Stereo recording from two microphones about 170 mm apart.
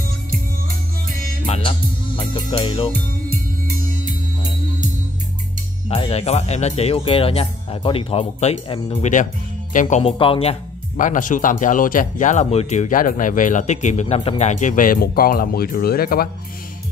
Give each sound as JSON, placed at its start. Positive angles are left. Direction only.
{"t": 1.4, "sound": "music", "side_deg": 30}
{"t": 5.9, "sound": "speech", "side_deg": 35}
{"t": 8.9, "sound": "speech", "side_deg": 45}
{"t": 10.1, "sound": "speech", "side_deg": 30}
{"t": 11.0, "sound": "speech", "side_deg": 50}